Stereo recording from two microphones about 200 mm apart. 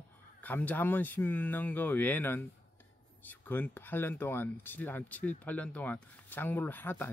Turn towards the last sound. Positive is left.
turn(degrees=10)  # may be behind; listen again after turning